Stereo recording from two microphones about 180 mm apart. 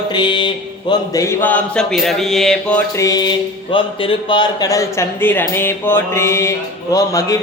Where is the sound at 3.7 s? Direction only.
30° left (ahead or behind).